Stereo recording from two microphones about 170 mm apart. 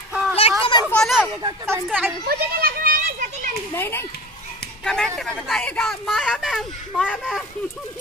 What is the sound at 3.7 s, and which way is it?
Speech, 15° left (ahead or behind).